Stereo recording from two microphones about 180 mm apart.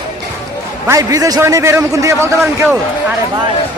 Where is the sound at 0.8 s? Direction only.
20° right (ahead or behind).